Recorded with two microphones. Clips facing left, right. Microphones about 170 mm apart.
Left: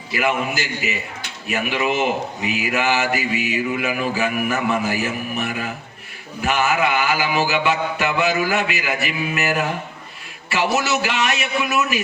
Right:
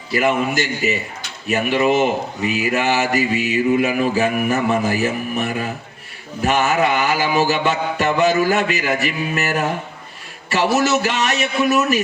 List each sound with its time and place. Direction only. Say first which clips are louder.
0.1 s speech: right 4 dB; 40° right (ahead or behind)
10.8 s speech: right 3 dB; 40° right (ahead or behind)